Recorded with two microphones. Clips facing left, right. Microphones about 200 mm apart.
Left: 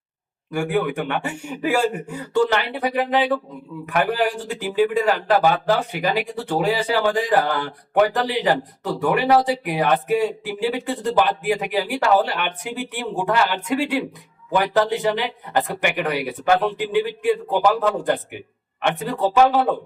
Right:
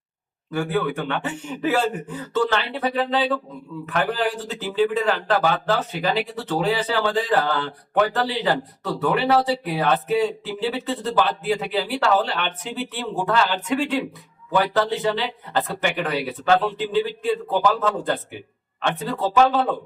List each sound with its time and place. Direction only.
0.5 s speech: 10° left (ahead or behind)